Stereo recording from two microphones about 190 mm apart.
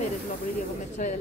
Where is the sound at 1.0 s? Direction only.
40° left (ahead or behind).